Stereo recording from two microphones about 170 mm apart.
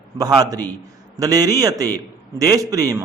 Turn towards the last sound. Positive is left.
turn(degrees=-20)  # may be behind; listen again after turning